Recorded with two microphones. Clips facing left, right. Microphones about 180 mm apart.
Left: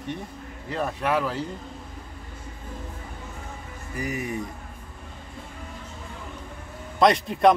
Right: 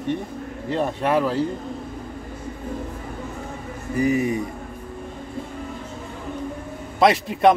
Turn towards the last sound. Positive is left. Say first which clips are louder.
# right 2 dB
turn(degrees=-5)  # may be behind; listen again after turning